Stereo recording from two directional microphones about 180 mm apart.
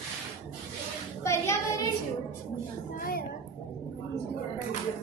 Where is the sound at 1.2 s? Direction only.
15° left (ahead or behind).